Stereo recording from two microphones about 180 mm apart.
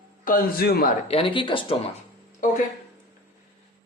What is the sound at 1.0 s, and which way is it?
Speech, 30° left (ahead or behind).